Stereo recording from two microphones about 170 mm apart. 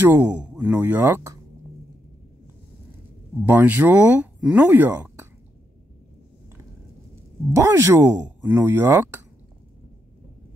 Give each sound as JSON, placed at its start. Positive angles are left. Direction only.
{"t": 0.0, "sound": "speech", "side_deg": -10}
{"t": 3.4, "sound": "speech", "side_deg": -10}
{"t": 7.5, "sound": "speech", "side_deg": -15}